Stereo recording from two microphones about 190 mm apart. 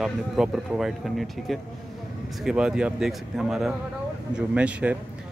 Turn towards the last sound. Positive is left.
turn(degrees=-5)  # may be behind; listen again after turning